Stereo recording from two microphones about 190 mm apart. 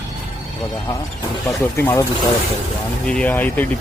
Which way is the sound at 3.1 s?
5° left (ahead or behind).